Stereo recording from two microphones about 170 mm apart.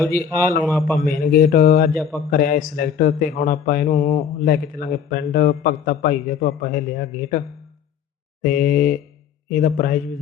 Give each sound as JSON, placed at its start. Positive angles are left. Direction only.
{"t": 0.5, "sound": "a man's voice", "side_deg": 0}
{"t": 1.1, "sound": "a man's voice", "side_deg": 55}
{"t": 4.4, "sound": "a man's voice", "side_deg": 60}